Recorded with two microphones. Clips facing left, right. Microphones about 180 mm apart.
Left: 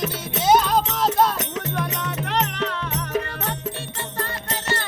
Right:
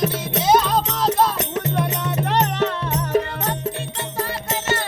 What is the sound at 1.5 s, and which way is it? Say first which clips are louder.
Music: right 4 dB; 30° right (ahead or behind).